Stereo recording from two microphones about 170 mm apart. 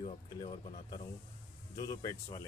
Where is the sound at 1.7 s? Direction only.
25° left (ahead or behind).